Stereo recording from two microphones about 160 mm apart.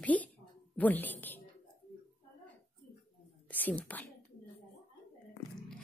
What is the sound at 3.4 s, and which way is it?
Whispering, 10° left (ahead or behind).